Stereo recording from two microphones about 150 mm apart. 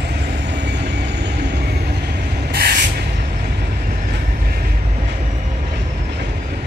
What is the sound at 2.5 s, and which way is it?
Spray, 90° right.